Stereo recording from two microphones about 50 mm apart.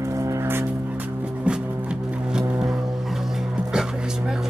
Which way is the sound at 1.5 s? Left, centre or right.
Right.